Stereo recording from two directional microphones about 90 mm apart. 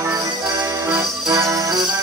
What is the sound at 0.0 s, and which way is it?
Music, 40° right (ahead or behind).